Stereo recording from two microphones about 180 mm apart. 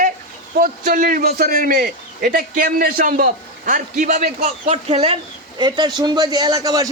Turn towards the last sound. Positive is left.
turn(degrees=-20)  # may be behind; listen again after turning